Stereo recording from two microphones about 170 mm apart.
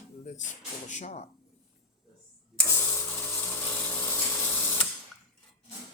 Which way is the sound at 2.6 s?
15° left (ahead or behind).